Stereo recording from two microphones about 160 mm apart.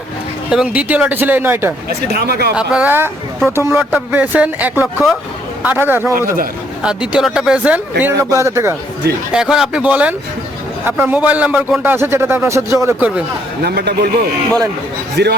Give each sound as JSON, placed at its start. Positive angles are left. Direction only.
{"t": 0.5, "sound": "speech", "side_deg": -5}
{"t": 2.0, "sound": "a man's voice", "side_deg": -85}
{"t": 2.6, "sound": "speech", "side_deg": -10}
{"t": 9.3, "sound": "speech", "side_deg": -5}
{"t": 13.6, "sound": "a man's voice", "side_deg": -80}